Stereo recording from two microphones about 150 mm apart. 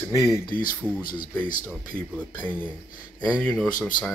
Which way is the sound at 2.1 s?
10° left (ahead or behind).